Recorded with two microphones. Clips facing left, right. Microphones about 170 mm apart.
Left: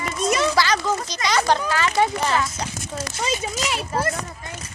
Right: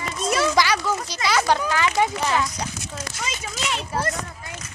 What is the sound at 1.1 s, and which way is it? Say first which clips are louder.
Speech: even; 5° right (ahead or behind).